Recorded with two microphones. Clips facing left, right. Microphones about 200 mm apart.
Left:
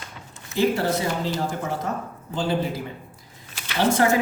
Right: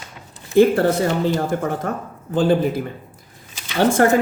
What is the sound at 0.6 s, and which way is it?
A woman's voice, 55° right (ahead or behind).